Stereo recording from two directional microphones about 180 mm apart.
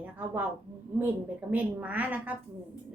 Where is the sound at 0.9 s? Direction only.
10° right (ahead or behind).